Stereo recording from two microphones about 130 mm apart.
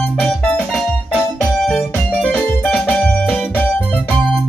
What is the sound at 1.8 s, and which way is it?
Music, 15° left (ahead or behind).